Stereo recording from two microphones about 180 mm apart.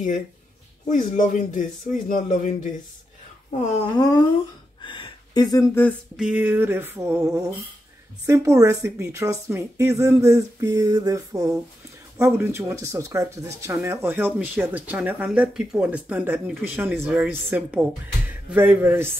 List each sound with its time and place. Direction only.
0.8 s speech: 45° left (ahead or behind)
3.9 s speech: 20° left (ahead or behind)
4.8 s a sound: 25° left (ahead or behind)
6.1 s speech: 5° right (ahead or behind)